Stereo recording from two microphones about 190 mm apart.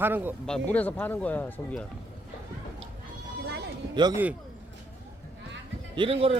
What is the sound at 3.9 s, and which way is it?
Speech, 25° right (ahead or behind).